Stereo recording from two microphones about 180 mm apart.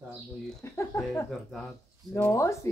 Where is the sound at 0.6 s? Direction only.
15° left (ahead or behind).